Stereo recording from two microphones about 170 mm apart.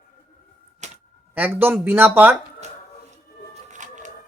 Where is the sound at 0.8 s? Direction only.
45° right (ahead or behind).